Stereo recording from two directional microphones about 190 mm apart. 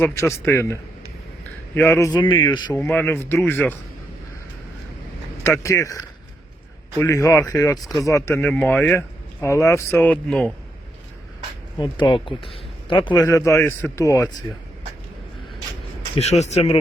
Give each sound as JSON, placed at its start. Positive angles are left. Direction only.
{"t": 0.0, "sound": "speech", "side_deg": 15}
{"t": 2.7, "sound": "speech", "side_deg": 10}
{"t": 5.4, "sound": "speech", "side_deg": 15}
{"t": 7.0, "sound": "speech", "side_deg": 15}
{"t": 11.8, "sound": "speech", "side_deg": 25}
{"t": 16.3, "sound": "speech", "side_deg": 35}